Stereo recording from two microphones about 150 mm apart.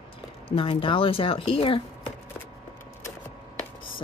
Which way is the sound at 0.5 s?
35° left (ahead or behind).